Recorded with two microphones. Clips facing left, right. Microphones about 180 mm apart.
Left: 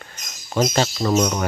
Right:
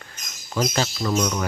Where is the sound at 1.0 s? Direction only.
45° left (ahead or behind).